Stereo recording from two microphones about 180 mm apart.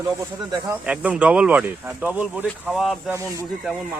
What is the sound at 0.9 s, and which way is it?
Speech, 5° right (ahead or behind).